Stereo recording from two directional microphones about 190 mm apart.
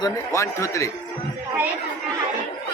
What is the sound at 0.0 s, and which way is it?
Speech, 15° left (ahead or behind).